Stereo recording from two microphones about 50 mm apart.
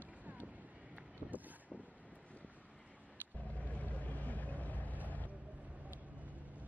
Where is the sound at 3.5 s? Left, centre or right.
Left.